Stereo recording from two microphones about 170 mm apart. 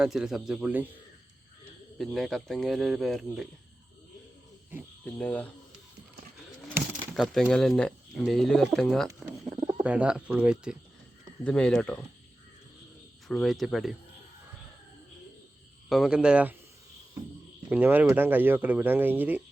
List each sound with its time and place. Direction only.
0.0 s speech: centre (ahead or behind)
2.0 s speech: centre (ahead or behind)
5.1 s speech: 10° left (ahead or behind)
6.7 s speech: 5° left (ahead or behind)
9.0 s bird: 20° right (ahead or behind)
9.5 s bird: 30° right (ahead or behind)
9.8 s speech: 5° right (ahead or behind)
13.2 s speech: centre (ahead or behind)
15.9 s speech: 5° right (ahead or behind)
17.7 s speech: 10° right (ahead or behind)